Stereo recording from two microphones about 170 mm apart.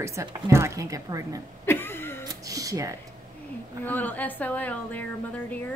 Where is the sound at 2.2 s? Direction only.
20° right (ahead or behind).